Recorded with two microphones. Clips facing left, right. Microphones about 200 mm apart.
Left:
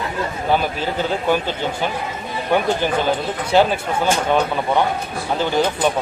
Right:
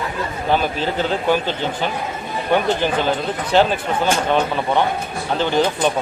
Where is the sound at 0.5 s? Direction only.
10° left (ahead or behind).